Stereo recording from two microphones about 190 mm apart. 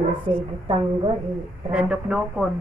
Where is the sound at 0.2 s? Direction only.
25° right (ahead or behind).